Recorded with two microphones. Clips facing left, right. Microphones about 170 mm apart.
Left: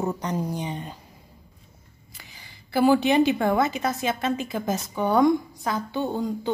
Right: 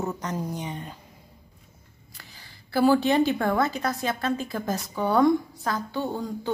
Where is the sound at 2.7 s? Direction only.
20° left (ahead or behind).